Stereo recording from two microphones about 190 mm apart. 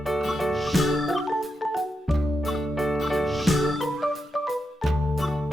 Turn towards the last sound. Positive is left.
turn(degrees=0)  # may be behind; listen again after turning